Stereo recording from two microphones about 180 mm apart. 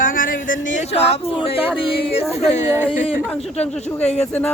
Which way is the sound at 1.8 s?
35° left (ahead or behind).